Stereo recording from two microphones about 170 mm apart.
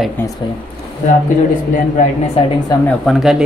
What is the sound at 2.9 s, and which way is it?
Speech, centre (ahead or behind).